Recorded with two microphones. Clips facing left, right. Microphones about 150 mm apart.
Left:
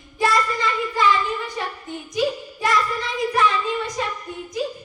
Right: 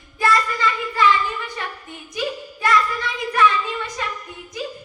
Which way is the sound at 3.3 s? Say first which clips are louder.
Right 3 dB; 30° left (ahead or behind).